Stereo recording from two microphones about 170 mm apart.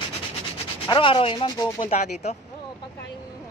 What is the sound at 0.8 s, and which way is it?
Speech, 30° left (ahead or behind).